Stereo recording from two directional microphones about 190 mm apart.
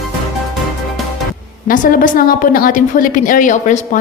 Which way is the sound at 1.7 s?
45° left (ahead or behind).